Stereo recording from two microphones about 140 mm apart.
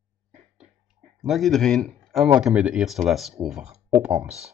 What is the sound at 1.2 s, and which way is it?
Speech, centre (ahead or behind).